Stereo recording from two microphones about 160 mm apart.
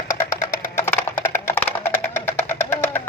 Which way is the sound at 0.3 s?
15° left (ahead or behind).